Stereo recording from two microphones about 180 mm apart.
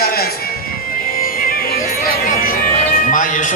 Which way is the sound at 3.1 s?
45° left (ahead or behind).